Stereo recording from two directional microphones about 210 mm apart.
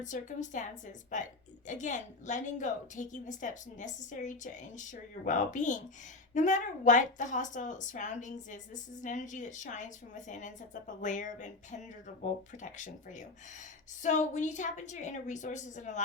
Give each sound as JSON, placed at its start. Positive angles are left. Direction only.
{"t": 0.0, "sound": "a woman's voice", "side_deg": 35}